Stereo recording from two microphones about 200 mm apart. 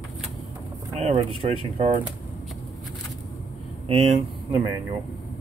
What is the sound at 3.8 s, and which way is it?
Speech, 30° right (ahead or behind).